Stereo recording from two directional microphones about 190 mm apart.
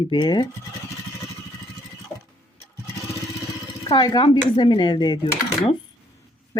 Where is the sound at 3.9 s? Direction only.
25° left (ahead or behind).